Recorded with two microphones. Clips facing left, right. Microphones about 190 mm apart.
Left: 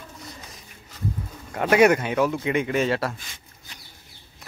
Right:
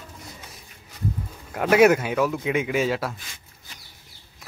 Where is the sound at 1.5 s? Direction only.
5° right (ahead or behind).